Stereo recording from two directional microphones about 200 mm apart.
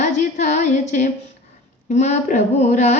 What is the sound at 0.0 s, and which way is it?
Female singing, 35° left (ahead or behind).